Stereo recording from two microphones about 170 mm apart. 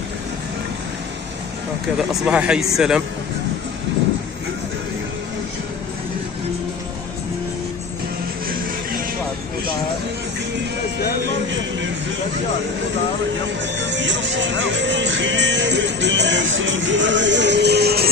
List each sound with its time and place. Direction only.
2.0 s speech: 5° right (ahead or behind)
13.7 s music: 90° right; by 18.1 s 70° right (ahead or behind)